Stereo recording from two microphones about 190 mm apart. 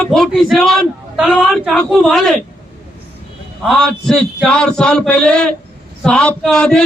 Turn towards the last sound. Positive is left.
turn(degrees=5)  # may be behind; listen again after turning